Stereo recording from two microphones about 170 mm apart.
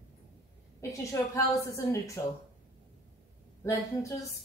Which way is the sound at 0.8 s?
15° left (ahead or behind).